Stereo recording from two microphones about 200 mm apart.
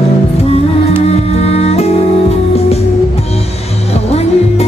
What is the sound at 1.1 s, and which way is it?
Music, 30° left (ahead or behind).